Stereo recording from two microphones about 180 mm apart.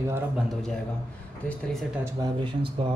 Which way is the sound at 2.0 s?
20° right (ahead or behind).